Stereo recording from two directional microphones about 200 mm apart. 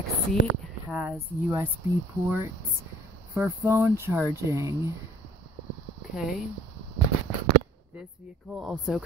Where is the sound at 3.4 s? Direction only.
15° right (ahead or behind).